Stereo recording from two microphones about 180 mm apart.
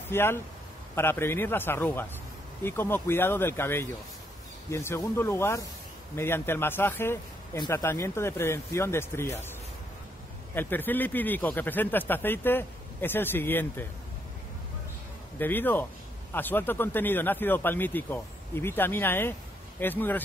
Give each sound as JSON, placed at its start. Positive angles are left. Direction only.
{"t": 0.1, "sound": "a man's voice", "side_deg": 15}
{"t": 10.5, "sound": "a man's voice", "side_deg": 10}
{"t": 15.3, "sound": "a man's voice", "side_deg": 10}